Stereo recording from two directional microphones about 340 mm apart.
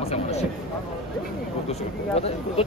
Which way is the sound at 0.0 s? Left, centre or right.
Centre.